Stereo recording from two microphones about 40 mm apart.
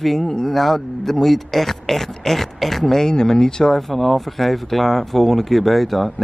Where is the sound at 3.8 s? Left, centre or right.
Centre.